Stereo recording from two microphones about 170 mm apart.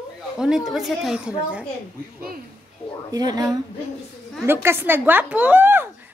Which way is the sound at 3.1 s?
25° right (ahead or behind).